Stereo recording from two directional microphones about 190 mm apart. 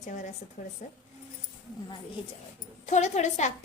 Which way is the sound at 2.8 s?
35° left (ahead or behind).